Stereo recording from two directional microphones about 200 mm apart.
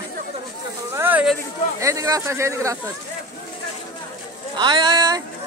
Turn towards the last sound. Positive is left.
turn(degrees=-20)  # may be behind; listen again after turning